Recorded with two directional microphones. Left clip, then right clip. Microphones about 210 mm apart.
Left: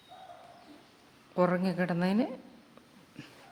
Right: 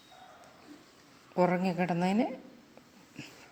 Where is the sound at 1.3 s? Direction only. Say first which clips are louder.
Even; 10° left (ahead or behind).